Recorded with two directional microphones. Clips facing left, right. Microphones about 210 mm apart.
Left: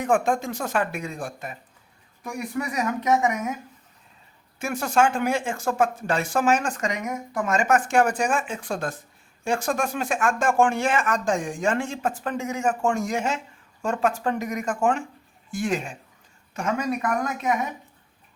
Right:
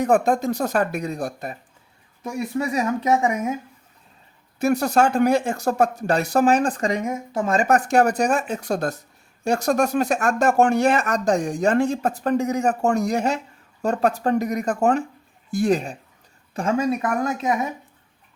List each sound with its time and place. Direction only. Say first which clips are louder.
0.0 s speech: right 4 dB; 40° right (ahead or behind)
2.2 s speech: right 4 dB; 25° right (ahead or behind)
4.6 s speech: right 4 dB; 40° right (ahead or behind)